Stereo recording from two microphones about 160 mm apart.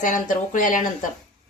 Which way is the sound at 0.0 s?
55° left (ahead or behind).